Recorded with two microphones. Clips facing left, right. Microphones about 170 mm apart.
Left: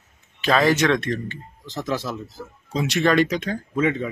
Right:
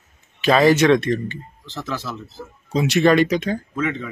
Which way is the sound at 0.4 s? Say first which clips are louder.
Right 4 dB; 10° right (ahead or behind).